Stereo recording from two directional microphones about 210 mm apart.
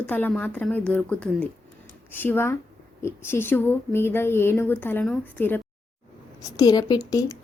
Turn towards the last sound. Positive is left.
turn(degrees=15)  # may be behind; listen again after turning